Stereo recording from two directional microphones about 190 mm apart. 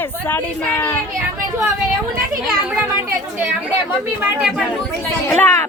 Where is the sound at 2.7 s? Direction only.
10° right (ahead or behind).